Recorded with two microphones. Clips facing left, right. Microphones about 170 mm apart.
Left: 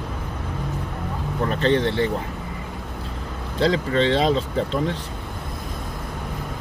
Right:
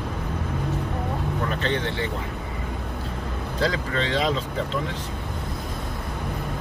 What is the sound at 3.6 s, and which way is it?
Speech, 30° left (ahead or behind).